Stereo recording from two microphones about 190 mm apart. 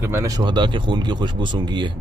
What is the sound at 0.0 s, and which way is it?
Speech, 15° right (ahead or behind).